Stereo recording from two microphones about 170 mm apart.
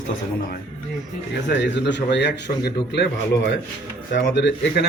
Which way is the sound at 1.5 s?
90° left.